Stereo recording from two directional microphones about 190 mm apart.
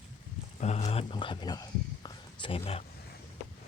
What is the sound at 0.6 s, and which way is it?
Speech, 35° left (ahead or behind).